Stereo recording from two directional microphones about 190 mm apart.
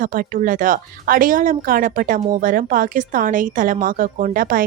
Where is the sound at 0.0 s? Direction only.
45° right (ahead or behind).